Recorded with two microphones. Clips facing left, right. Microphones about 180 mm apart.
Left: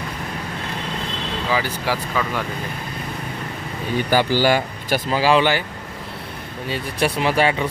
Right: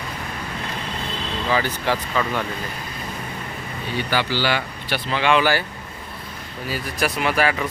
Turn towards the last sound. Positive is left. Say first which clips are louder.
# left 2 dB
turn(degrees=30)  # may be behind; listen again after turning